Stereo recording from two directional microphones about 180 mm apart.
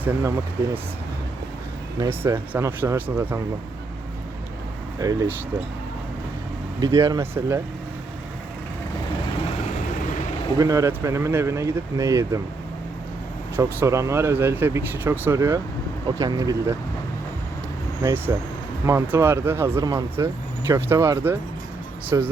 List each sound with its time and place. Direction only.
0.0 s speech: 15° right (ahead or behind)
2.0 s speech: 15° right (ahead or behind)
4.9 s speech: 20° right (ahead or behind)
6.7 s speech: 20° right (ahead or behind)
10.6 s speech: 20° right (ahead or behind)
13.6 s speech: 15° right (ahead or behind)
18.9 s speech: 15° right (ahead or behind)